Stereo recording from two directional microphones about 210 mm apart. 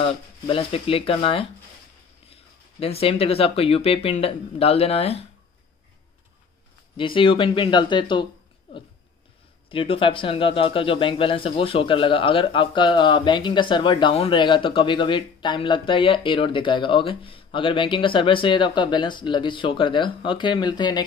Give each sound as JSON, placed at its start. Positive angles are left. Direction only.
{"t": 0.0, "sound": "speech", "side_deg": 25}
{"t": 7.0, "sound": "speech", "side_deg": 25}
{"t": 9.7, "sound": "speech", "side_deg": 25}